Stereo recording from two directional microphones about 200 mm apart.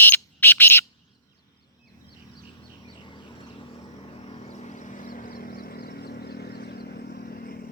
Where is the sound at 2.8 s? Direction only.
25° left (ahead or behind).